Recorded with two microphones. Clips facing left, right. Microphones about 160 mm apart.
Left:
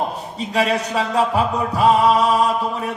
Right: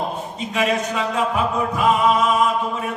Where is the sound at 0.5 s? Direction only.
35° left (ahead or behind).